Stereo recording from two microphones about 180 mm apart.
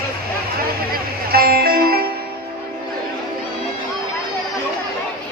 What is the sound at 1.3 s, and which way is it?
Music, 55° right (ahead or behind).